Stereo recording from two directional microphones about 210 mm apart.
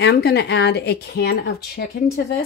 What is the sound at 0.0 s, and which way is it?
Speech, 50° left (ahead or behind).